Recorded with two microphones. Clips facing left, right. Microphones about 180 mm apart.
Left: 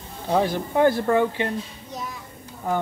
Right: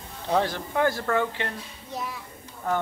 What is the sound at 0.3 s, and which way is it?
Speech, 15° left (ahead or behind).